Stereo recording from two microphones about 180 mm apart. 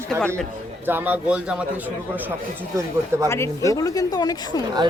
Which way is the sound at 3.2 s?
15° left (ahead or behind).